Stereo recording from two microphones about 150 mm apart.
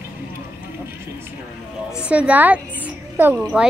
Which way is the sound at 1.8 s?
5° right (ahead or behind).